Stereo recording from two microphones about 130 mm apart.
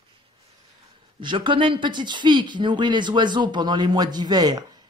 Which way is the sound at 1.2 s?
40° right (ahead or behind).